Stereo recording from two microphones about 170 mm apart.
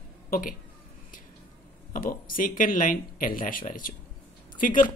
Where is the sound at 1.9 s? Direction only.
55° left (ahead or behind).